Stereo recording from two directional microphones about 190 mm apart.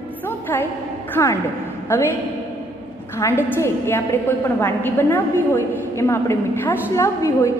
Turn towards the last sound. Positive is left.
turn(degrees=15)  # may be behind; listen again after turning